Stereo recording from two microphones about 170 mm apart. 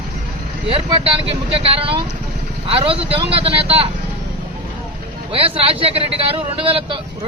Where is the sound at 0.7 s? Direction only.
35° right (ahead or behind).